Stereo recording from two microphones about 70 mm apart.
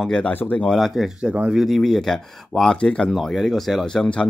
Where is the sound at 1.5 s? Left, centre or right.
Centre.